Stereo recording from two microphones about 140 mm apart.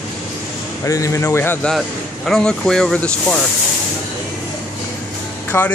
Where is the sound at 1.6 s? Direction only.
Centre (ahead or behind).